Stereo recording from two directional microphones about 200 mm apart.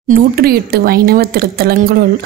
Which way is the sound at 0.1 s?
50° right (ahead or behind).